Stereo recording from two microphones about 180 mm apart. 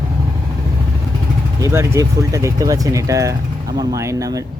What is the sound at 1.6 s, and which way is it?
Speech, 15° right (ahead or behind).